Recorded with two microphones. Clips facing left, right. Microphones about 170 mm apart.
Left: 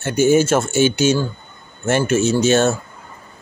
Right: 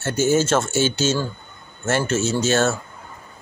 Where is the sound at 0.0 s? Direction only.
15° left (ahead or behind).